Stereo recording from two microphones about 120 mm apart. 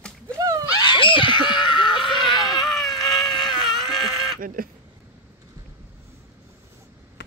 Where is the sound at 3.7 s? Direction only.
Centre (ahead or behind).